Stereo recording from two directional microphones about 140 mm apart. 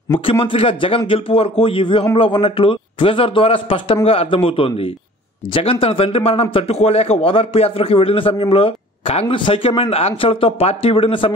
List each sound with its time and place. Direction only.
0.2 s a man's voice: 40° left (ahead or behind)